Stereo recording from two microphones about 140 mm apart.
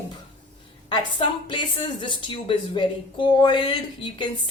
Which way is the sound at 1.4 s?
35° left (ahead or behind).